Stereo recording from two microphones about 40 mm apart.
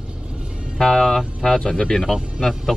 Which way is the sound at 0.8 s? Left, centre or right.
Centre.